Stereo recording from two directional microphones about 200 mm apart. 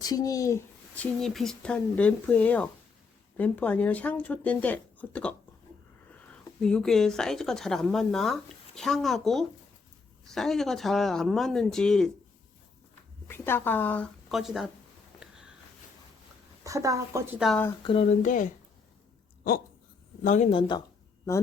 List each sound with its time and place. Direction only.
0.0 s a child's voice: 20° left (ahead or behind)
1.2 s speech: centre (ahead or behind)
6.6 s a woman's voice: 5° left (ahead or behind)
13.2 s speech: 10° left (ahead or behind)
15.2 s a sound: 5° right (ahead or behind)
16.6 s a woman's voice: 15° right (ahead or behind)
17.4 s a woman's voice: 5° left (ahead or behind)
17.8 s speech: 30° left (ahead or behind)
20.2 s speech: 35° left (ahead or behind)